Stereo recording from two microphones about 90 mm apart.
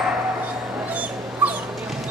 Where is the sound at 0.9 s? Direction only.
15° right (ahead or behind).